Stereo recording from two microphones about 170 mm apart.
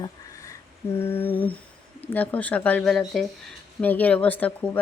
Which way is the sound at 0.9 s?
15° left (ahead or behind).